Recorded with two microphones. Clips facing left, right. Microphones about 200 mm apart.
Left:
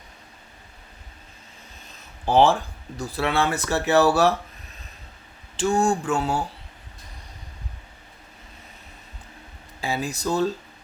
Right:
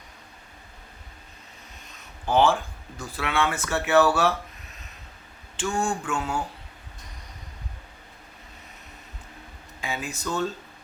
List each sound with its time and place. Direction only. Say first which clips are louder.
2.2 s speech: left 3 dB; 35° left (ahead or behind)
5.5 s speech: left 6 dB; 40° left (ahead or behind)
9.8 s speech: left 5 dB; 35° left (ahead or behind)